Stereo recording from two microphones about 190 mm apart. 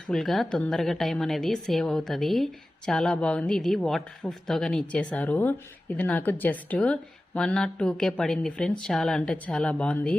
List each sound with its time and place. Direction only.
0.1 s a woman's voice: centre (ahead or behind)